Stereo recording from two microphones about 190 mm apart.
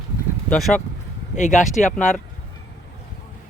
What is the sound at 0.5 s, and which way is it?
Speech, 5° left (ahead or behind).